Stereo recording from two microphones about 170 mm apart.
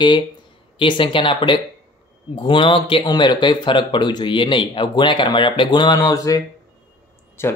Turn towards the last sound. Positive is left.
turn(degrees=15)  # may be behind; listen again after turning